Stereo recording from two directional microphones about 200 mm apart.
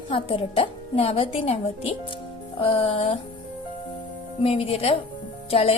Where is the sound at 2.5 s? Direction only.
25° left (ahead or behind).